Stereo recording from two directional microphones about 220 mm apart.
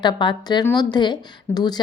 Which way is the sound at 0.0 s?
20° left (ahead or behind).